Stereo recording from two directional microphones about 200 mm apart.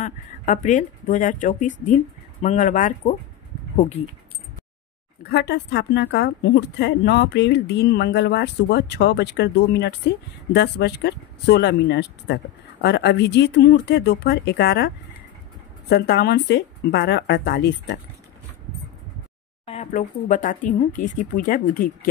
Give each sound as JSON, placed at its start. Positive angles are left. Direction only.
{"t": 0.0, "sound": "speech", "side_deg": 40}
{"t": 4.0, "sound": "speech", "side_deg": 30}
{"t": 5.2, "sound": "a woman's voice", "side_deg": 55}
{"t": 15.9, "sound": "speech", "side_deg": 55}
{"t": 19.6, "sound": "speech", "side_deg": 30}